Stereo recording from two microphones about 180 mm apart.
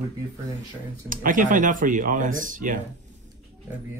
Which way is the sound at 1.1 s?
50° right (ahead or behind).